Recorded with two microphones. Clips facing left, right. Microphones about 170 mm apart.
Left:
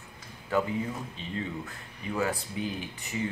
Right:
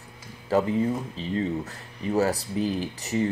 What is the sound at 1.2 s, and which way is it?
Speech, 35° right (ahead or behind).